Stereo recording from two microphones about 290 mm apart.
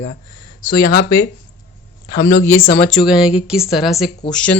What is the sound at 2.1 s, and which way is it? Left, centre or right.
Speech, left.